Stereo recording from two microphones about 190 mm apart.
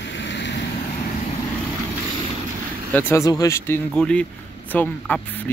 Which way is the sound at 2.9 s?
10° left (ahead or behind).